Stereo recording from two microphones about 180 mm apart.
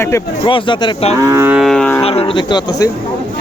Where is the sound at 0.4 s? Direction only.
25° left (ahead or behind).